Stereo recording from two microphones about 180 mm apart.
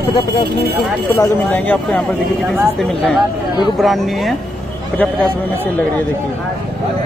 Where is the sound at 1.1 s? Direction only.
15° left (ahead or behind).